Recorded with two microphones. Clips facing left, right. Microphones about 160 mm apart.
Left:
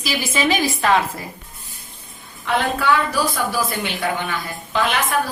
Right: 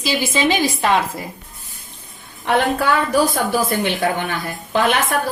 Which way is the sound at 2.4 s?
55° right (ahead or behind).